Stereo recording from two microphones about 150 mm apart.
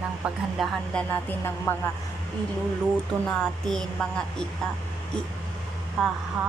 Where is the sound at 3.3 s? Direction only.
5° left (ahead or behind).